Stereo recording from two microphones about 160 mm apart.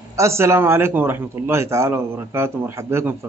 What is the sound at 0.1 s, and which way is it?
A man's voice, 15° right (ahead or behind).